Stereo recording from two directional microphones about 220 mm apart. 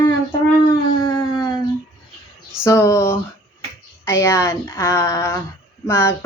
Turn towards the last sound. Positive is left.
turn(degrees=10)  # may be behind; listen again after turning